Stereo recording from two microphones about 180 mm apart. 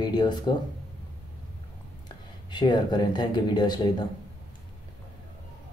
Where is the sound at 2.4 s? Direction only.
25° left (ahead or behind).